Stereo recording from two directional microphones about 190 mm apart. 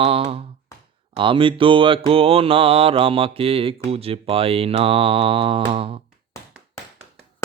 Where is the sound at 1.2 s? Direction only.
25° right (ahead or behind).